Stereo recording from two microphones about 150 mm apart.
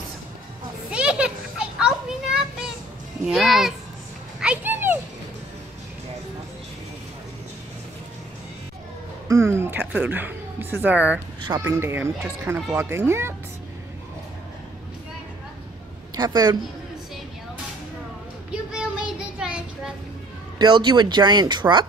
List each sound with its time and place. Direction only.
0.8 s children playing: 5° right (ahead or behind)
3.3 s speech: centre (ahead or behind)
4.4 s a sound: 10° right (ahead or behind)
9.3 s speech: 20° right (ahead or behind)
16.2 s speech: 25° right (ahead or behind)
18.5 s child singing: 5° right (ahead or behind)
20.5 s speech: 30° right (ahead or behind)